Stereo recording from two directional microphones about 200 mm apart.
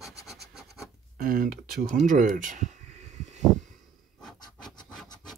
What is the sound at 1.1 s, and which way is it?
Speech, 45° right (ahead or behind).